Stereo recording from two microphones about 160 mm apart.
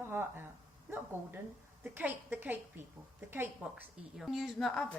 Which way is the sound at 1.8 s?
15° right (ahead or behind).